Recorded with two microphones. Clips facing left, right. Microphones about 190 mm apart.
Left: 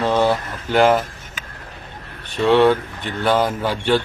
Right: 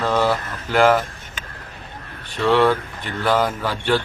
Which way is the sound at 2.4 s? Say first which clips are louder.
Left 3 dB; 20° left (ahead or behind).